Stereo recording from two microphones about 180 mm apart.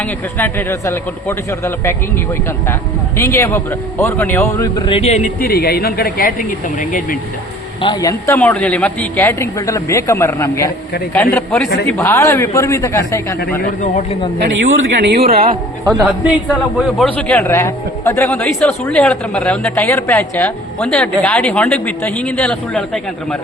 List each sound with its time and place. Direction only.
0.0 s a woman's voice: 10° left (ahead or behind)
3.2 s a woman's voice: 15° left (ahead or behind)
4.9 s speech: 35° left (ahead or behind)
5.4 s speech: 60° left (ahead or behind)
7.8 s speech: 25° left (ahead or behind)
8.3 s a woman's voice: 10° left (ahead or behind)
13.8 s speech: 45° left (ahead or behind)
14.5 s speech: 90° right; by 15.4 s 60° right (ahead or behind)
16.7 s a woman's voice: 5° left (ahead or behind)
19.7 s a woman's voice: 15° left (ahead or behind)